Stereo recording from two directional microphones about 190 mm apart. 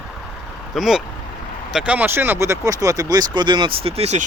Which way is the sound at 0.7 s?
Centre (ahead or behind).